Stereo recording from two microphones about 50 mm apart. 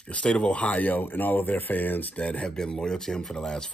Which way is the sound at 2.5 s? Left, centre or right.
Centre.